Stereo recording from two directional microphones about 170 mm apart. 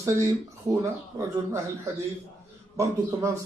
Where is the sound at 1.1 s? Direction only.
15° right (ahead or behind).